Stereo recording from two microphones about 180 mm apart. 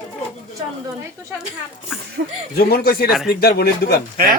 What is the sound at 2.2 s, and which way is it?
Speech, 55° right (ahead or behind).